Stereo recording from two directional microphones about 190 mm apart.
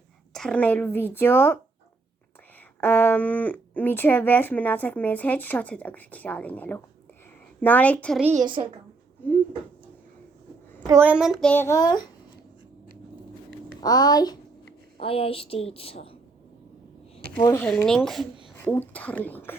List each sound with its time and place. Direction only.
0.3 s speech: 5° left (ahead or behind)
2.8 s speech: 10° left (ahead or behind)
8.2 s a woman's voice: 15° right (ahead or behind)
8.4 s a woman's voice: 25° right (ahead or behind)
10.8 s a child's voice: 10° right (ahead or behind); by 12.0 s 20° left (ahead or behind)
13.8 s a woman's voice: 20° left (ahead or behind)
17.3 s a child's voice: 10° left (ahead or behind)